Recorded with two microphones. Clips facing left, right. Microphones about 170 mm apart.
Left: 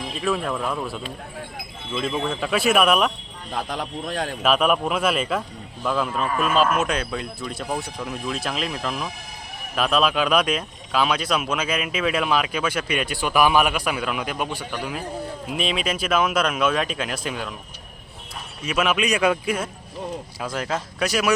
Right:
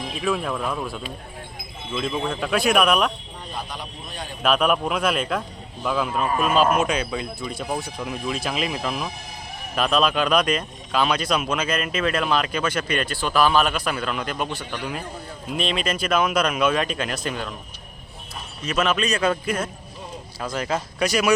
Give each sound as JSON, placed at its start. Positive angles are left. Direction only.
{"t": 0.1, "sound": "speech", "side_deg": 0}
{"t": 3.5, "sound": "a man's voice", "side_deg": 90}
{"t": 4.4, "sound": "speech", "side_deg": 0}
{"t": 18.6, "sound": "speech", "side_deg": 10}